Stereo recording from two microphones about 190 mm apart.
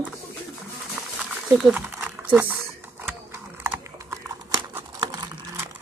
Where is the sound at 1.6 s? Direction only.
5° right (ahead or behind).